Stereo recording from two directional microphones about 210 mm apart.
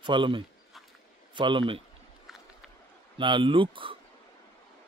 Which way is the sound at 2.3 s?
Centre (ahead or behind).